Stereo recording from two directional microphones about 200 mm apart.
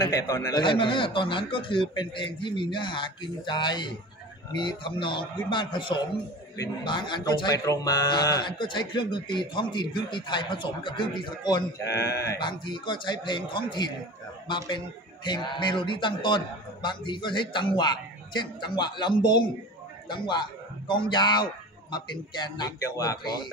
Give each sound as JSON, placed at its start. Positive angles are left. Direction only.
{"t": 0.0, "sound": "a man's voice", "side_deg": 20}
{"t": 15.2, "sound": "a man's voice", "side_deg": 25}